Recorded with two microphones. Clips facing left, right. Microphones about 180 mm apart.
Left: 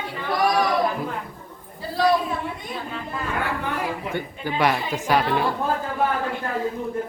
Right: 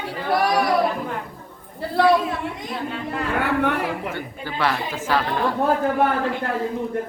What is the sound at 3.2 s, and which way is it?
Speech, 70° right (ahead or behind).